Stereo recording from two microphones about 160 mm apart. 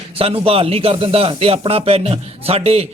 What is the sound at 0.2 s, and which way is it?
Speech, 35° right (ahead or behind).